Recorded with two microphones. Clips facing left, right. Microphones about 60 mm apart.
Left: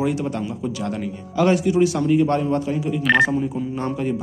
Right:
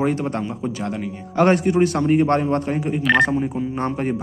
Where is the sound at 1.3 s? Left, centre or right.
Right.